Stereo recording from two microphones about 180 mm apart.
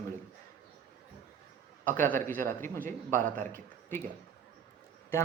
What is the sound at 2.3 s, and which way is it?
A man's voice, 15° left (ahead or behind).